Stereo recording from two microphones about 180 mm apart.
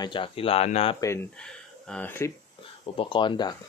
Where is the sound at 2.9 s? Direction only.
25° left (ahead or behind).